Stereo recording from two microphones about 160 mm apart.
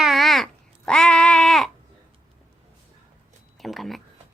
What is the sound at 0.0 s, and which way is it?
Babbling, centre (ahead or behind).